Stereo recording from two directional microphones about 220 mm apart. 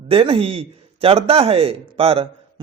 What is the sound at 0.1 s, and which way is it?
Speech, 25° right (ahead or behind).